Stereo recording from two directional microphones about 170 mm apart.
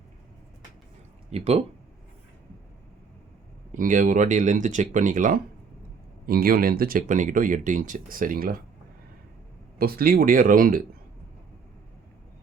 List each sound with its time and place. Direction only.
1.3 s speech: 40° right (ahead or behind)
3.7 s speech: 50° right (ahead or behind)
9.7 s speech: 60° right (ahead or behind)